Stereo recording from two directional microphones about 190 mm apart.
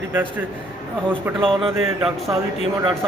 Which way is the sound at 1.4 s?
30° right (ahead or behind).